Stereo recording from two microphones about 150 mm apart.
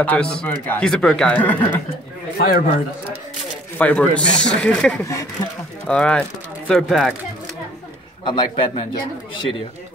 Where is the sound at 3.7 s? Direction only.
10° left (ahead or behind).